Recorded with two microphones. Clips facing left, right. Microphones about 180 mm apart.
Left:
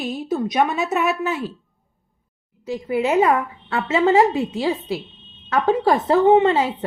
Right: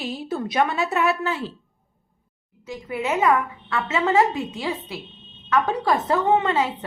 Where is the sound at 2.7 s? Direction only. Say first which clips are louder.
Left 6 dB; 30° left (ahead or behind).